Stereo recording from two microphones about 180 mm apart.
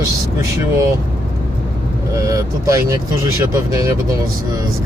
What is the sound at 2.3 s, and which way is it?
Speech, 15° right (ahead or behind).